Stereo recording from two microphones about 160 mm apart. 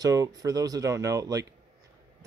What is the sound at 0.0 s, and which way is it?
Speech, 20° right (ahead or behind).